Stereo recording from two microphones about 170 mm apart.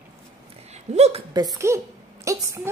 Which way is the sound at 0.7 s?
40° right (ahead or behind).